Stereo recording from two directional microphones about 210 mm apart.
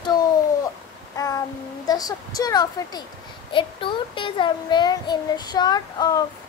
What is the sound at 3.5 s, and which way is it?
A child's voice, 25° left (ahead or behind).